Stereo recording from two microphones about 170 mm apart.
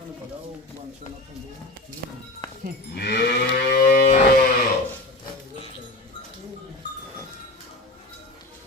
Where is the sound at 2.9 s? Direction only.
70° left (ahead or behind).